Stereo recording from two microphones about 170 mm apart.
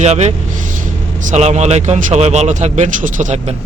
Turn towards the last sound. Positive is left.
turn(degrees=-45)  # may be behind; listen again after turning